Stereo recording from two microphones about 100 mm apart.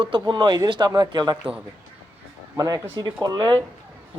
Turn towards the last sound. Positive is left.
turn(degrees=-45)  # may be behind; listen again after turning